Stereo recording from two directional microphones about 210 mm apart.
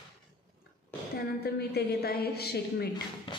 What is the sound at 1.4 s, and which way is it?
A woman's voice, 50° left (ahead or behind).